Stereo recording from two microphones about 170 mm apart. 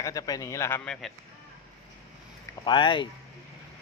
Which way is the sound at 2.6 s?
30° left (ahead or behind).